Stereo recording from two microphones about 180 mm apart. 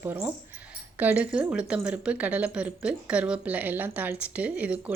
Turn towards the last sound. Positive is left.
turn(degrees=-5)  # may be behind; listen again after turning